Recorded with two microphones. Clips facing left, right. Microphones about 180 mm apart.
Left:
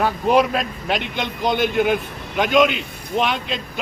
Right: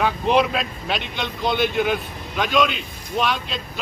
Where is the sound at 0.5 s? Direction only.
50° left (ahead or behind).